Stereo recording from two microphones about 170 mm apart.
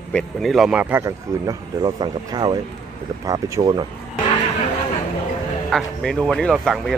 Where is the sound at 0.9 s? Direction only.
20° right (ahead or behind).